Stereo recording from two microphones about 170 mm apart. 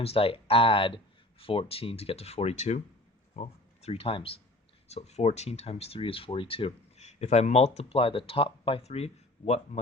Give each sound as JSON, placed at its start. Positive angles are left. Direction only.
{"t": 0.0, "sound": "speech", "side_deg": 35}